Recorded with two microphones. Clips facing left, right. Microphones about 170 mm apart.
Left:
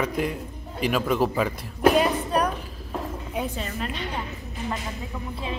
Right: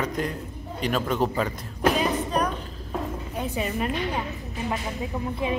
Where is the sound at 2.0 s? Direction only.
10° left (ahead or behind).